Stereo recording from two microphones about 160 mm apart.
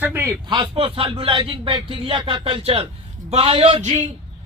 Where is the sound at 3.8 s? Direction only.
45° right (ahead or behind).